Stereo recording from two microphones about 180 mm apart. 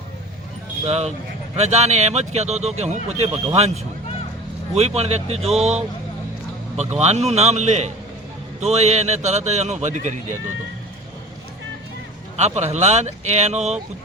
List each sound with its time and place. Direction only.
0.9 s speech: 35° right (ahead or behind)
4.7 s speech: 35° right (ahead or behind)
7.0 s speech: 35° right (ahead or behind)
12.4 s speech: 40° right (ahead or behind)